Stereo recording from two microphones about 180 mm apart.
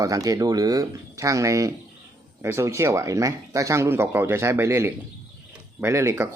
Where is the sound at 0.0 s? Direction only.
20° right (ahead or behind).